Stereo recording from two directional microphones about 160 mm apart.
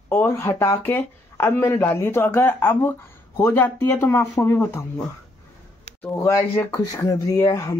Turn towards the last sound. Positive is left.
turn(degrees=20)  # may be behind; listen again after turning